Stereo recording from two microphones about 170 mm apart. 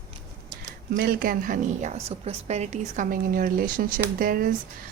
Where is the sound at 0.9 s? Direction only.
60° right (ahead or behind).